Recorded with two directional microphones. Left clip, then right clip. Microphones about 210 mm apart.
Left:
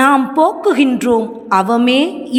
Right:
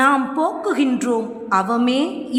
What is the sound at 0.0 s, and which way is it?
A woman's voice, 25° left (ahead or behind).